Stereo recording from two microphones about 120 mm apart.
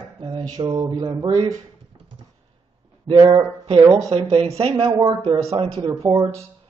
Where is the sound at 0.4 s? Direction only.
35° right (ahead or behind).